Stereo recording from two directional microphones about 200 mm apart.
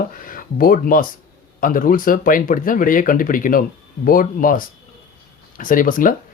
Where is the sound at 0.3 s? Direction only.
45° left (ahead or behind).